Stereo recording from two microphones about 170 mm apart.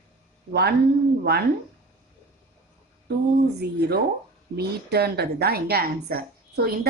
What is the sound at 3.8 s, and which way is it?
A woman's voice, 70° right (ahead or behind).